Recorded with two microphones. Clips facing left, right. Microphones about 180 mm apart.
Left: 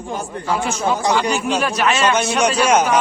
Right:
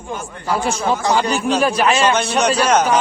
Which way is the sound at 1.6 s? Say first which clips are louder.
Right 3 dB; 30° right (ahead or behind).